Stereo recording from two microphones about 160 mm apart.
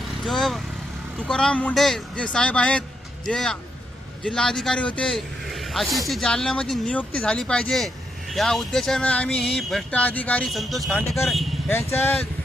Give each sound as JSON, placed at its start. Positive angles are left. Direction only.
{"t": 0.3, "sound": "a man's voice", "side_deg": 0}
{"t": 11.7, "sound": "speech", "side_deg": 15}